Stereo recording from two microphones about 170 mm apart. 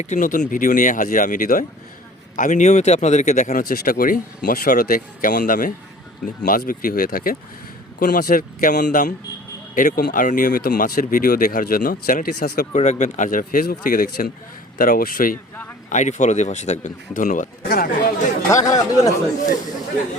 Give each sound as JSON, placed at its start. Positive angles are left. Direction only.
{"t": 0.0, "sound": "speech", "side_deg": 45}
{"t": 12.7, "sound": "speech", "side_deg": 45}
{"t": 15.9, "sound": "speech", "side_deg": 45}
{"t": 18.6, "sound": "speech", "side_deg": 20}